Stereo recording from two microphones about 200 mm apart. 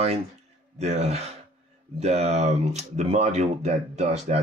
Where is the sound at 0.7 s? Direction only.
35° right (ahead or behind).